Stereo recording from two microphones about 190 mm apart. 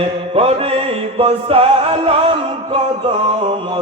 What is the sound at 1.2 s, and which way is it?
Music, 30° right (ahead or behind).